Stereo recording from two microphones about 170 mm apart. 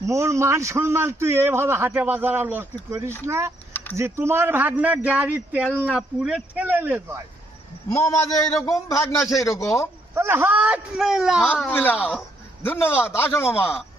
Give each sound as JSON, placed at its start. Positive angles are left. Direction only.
{"t": 0.0, "sound": "a man's voice", "side_deg": -15}
{"t": 3.7, "sound": "a sound", "side_deg": 15}
{"t": 3.9, "sound": "a man's voice", "side_deg": -15}
{"t": 7.9, "sound": "a man's voice", "side_deg": 20}
{"t": 10.2, "sound": "a man's voice", "side_deg": -15}
{"t": 11.7, "sound": "a man's voice", "side_deg": 10}
{"t": 11.9, "sound": "a man's voice", "side_deg": -5}
{"t": 12.6, "sound": "a man's voice", "side_deg": 10}